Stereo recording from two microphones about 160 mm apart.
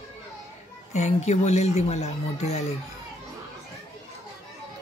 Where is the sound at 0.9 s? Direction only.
45° left (ahead or behind).